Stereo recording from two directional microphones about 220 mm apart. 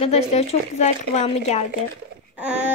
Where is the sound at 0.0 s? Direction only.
30° left (ahead or behind).